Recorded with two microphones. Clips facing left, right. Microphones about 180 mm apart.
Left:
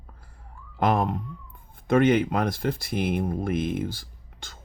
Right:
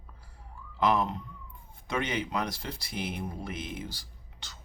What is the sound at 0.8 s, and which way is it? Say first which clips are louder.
Speech: left 3 dB; 50° left (ahead or behind).